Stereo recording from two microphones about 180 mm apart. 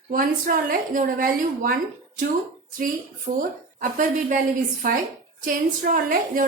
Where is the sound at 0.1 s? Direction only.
50° right (ahead or behind).